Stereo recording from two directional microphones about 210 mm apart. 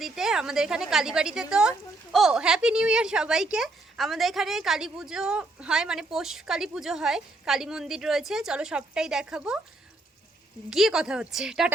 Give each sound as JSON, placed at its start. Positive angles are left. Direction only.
{"t": 0.0, "sound": "a woman's voice", "side_deg": 0}
{"t": 10.7, "sound": "a woman's voice", "side_deg": 0}